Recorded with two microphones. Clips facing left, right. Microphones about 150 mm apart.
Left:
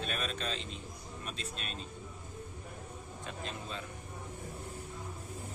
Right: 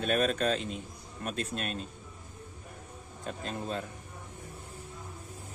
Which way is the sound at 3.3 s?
45° right (ahead or behind).